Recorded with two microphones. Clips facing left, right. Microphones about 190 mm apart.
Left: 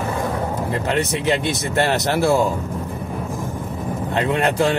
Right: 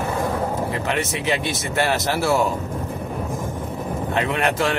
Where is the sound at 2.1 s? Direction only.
15° left (ahead or behind).